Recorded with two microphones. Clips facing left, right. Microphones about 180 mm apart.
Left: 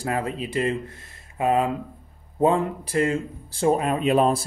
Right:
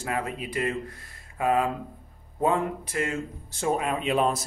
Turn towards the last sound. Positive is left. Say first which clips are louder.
# left 5 dB
turn(degrees=40)  # may be behind; listen again after turning